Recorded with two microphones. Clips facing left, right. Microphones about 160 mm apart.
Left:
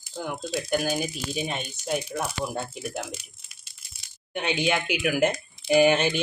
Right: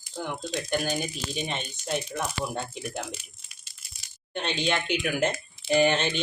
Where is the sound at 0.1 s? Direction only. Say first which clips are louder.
Left 2 dB; 10° left (ahead or behind).